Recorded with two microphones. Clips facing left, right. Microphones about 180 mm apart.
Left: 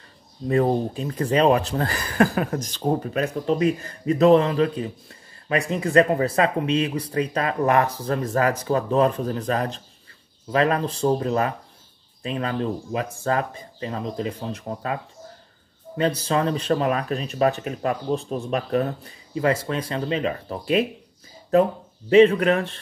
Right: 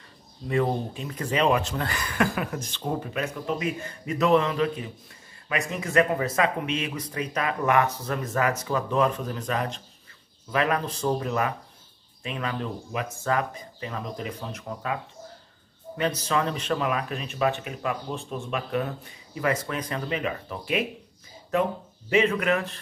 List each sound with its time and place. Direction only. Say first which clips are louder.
0.5 s speech: left 5 dB; 40° left (ahead or behind)
16.0 s speech: left 4 dB; 30° left (ahead or behind)
22.1 s speech: left 8 dB; 30° left (ahead or behind)